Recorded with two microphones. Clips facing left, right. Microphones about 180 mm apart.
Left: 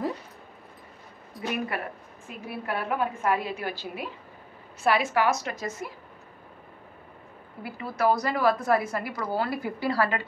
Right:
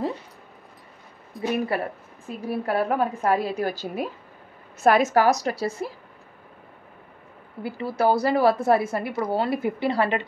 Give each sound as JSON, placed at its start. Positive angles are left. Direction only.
{"t": 1.7, "sound": "a woman's voice", "side_deg": -35}
{"t": 7.6, "sound": "a woman's voice", "side_deg": -30}